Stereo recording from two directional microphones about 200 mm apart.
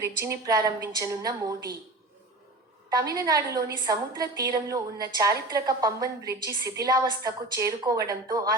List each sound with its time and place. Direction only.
0.2 s a woman's voice: 15° right (ahead or behind)
2.9 s a woman's voice: 15° right (ahead or behind)